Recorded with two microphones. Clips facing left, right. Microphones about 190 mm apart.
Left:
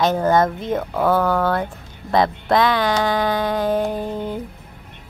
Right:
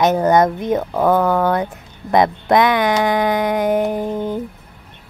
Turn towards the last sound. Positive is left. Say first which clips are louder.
# right 4 dB
turn(degrees=-20)  # may be behind; listen again after turning